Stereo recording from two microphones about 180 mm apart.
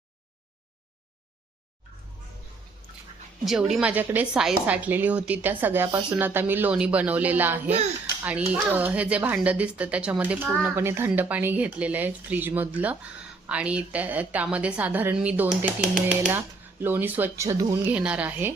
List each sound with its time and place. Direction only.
3.4 s a woman's voice: centre (ahead or behind)